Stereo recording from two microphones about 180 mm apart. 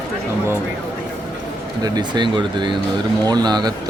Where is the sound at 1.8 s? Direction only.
25° right (ahead or behind).